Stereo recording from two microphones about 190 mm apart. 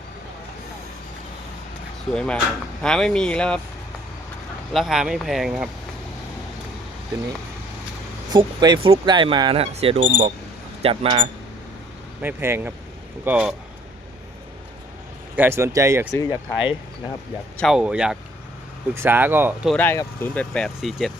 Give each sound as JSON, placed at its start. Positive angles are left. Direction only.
{"t": 2.1, "sound": "speech", "side_deg": 5}
{"t": 4.7, "sound": "speech", "side_deg": 0}
{"t": 8.3, "sound": "speech", "side_deg": -25}
{"t": 12.2, "sound": "speech", "side_deg": -10}
{"t": 15.4, "sound": "speech", "side_deg": -15}
{"t": 16.1, "sound": "speech", "side_deg": 20}
{"t": 17.6, "sound": "speech", "side_deg": -5}
{"t": 19.7, "sound": "speech", "side_deg": 10}